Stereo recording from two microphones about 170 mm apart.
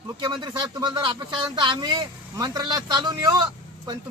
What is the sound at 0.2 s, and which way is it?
Speech, 25° right (ahead or behind).